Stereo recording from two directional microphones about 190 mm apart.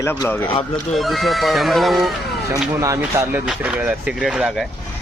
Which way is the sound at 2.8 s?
15° right (ahead or behind).